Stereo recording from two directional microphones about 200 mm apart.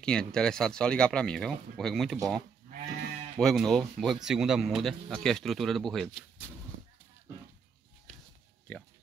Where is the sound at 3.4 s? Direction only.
Centre (ahead or behind).